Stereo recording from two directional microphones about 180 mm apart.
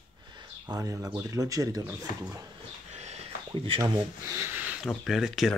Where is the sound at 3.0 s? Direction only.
35° right (ahead or behind).